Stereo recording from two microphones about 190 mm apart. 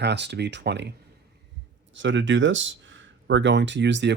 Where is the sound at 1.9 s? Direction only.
75° right (ahead or behind).